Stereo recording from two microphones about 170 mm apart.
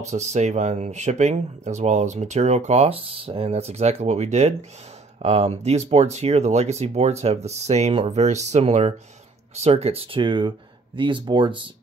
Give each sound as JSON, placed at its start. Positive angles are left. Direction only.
{"t": 0.0, "sound": "speech", "side_deg": -40}